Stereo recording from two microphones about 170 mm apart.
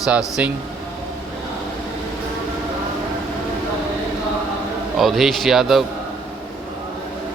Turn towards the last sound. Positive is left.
turn(degrees=0)  # may be behind; listen again after turning